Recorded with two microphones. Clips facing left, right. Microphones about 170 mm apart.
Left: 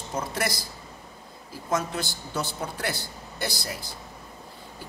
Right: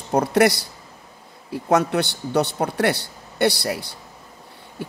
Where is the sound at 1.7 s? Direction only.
70° right (ahead or behind).